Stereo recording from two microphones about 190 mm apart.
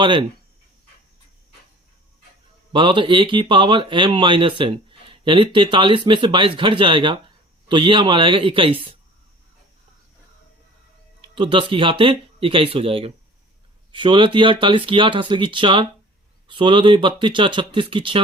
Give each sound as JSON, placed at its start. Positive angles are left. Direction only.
{"t": 0.0, "sound": "speech", "side_deg": -25}
{"t": 2.7, "sound": "speech", "side_deg": -25}
{"t": 11.2, "sound": "speech", "side_deg": -25}